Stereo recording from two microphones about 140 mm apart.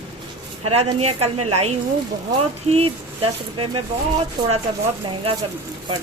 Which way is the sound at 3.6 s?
35° right (ahead or behind).